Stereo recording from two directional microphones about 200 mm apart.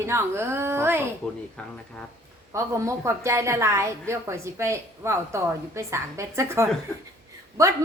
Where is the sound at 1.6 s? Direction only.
5° left (ahead or behind).